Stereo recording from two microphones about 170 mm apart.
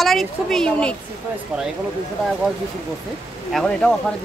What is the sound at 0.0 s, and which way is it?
Speech, centre (ahead or behind).